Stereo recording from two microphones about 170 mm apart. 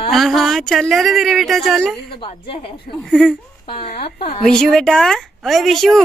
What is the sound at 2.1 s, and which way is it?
Speech, 30° left (ahead or behind).